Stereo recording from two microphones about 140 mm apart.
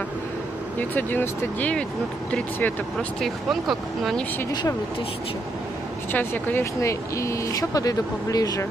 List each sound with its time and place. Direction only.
0.7 s speech: 10° left (ahead or behind)
4.5 s speech: 25° left (ahead or behind)
6.1 s speech: 10° left (ahead or behind)